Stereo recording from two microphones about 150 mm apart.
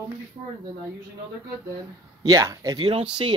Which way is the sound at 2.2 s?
20° right (ahead or behind).